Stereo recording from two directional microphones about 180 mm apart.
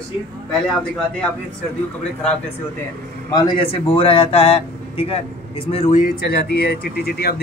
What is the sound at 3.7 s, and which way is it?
Speech, 30° left (ahead or behind).